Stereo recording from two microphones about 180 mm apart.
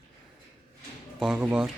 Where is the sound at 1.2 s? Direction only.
5° right (ahead or behind).